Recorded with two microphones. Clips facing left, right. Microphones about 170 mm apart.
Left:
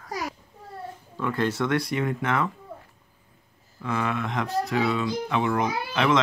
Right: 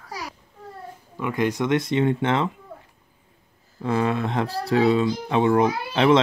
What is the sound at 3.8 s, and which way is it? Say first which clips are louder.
Speech: right 5 dB; 30° right (ahead or behind).